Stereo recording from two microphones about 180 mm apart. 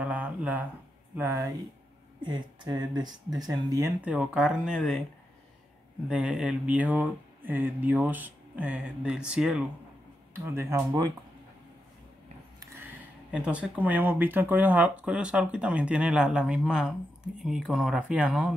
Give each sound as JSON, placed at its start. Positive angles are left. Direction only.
{"t": 0.0, "sound": "a sound", "side_deg": -10}
{"t": 1.1, "sound": "speech", "side_deg": -15}
{"t": 4.0, "sound": "speech", "side_deg": -5}
{"t": 6.0, "sound": "speech", "side_deg": -5}
{"t": 10.4, "sound": "speech", "side_deg": -15}
{"t": 13.3, "sound": "speech", "side_deg": -5}